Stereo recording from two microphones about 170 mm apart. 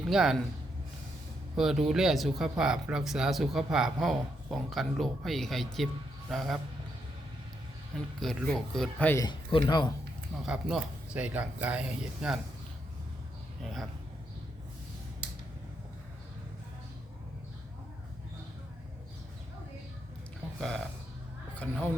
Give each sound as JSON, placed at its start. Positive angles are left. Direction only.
{"t": 0.0, "sound": "speech", "side_deg": 0}
{"t": 1.5, "sound": "speech", "side_deg": 0}
{"t": 8.2, "sound": "speech", "side_deg": 0}
{"t": 9.2, "sound": "a man's voice", "side_deg": 30}
{"t": 10.4, "sound": "speech", "side_deg": -5}
{"t": 13.6, "sound": "speech", "side_deg": 0}
{"t": 20.6, "sound": "speech", "side_deg": 5}